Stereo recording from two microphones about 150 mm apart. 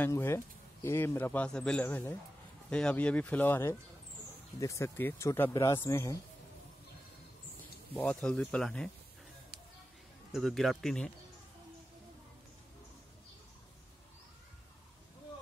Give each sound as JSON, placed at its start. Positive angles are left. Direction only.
{"t": 0.0, "sound": "speech", "side_deg": 15}
{"t": 7.9, "sound": "speech", "side_deg": 10}
{"t": 10.3, "sound": "speech", "side_deg": 0}